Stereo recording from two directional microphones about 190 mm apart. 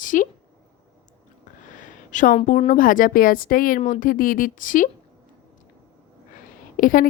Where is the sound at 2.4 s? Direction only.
40° left (ahead or behind).